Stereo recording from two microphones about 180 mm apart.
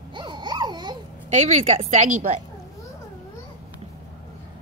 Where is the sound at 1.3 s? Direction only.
40° right (ahead or behind).